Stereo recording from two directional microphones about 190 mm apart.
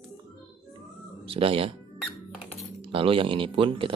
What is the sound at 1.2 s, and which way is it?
Speech, 30° right (ahead or behind).